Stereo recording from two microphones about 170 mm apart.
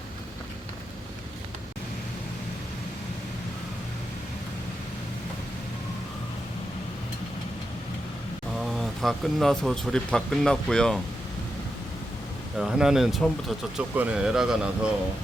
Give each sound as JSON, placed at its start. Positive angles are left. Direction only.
{"t": 8.5, "sound": "speech", "side_deg": 0}
{"t": 12.5, "sound": "speech", "side_deg": -5}